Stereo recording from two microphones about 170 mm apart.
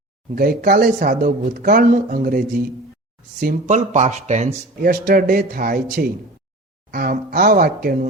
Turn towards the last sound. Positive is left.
turn(degrees=-60)  # may be behind; listen again after turning